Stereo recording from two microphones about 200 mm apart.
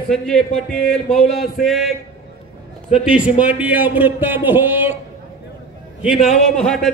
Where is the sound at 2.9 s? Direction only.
5° right (ahead or behind).